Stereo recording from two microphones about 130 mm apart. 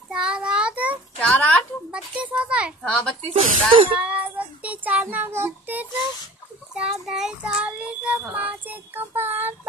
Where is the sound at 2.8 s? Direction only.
10° left (ahead or behind).